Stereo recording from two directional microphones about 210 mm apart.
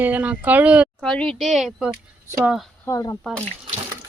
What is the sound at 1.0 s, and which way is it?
Speech, 5° left (ahead or behind).